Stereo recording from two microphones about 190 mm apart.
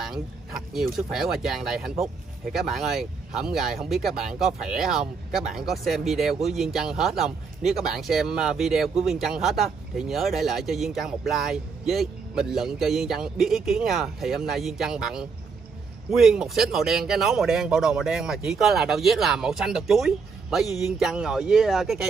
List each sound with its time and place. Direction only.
0.0 s speech: centre (ahead or behind)